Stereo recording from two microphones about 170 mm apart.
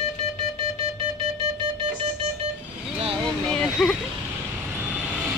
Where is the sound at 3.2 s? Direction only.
5° left (ahead or behind).